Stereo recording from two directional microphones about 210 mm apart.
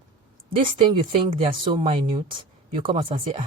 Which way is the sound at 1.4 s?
25° right (ahead or behind).